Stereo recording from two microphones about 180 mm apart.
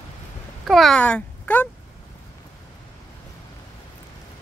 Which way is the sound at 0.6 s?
Centre (ahead or behind).